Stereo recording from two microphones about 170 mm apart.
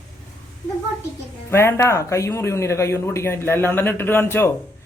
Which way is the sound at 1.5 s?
15° left (ahead or behind).